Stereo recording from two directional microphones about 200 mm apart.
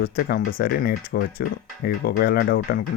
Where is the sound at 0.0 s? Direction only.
50° left (ahead or behind).